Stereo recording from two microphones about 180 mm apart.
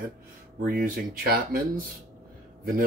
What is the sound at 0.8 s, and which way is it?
Speech, 55° right (ahead or behind).